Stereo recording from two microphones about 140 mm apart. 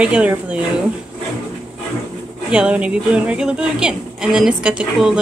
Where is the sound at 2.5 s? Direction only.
10° right (ahead or behind).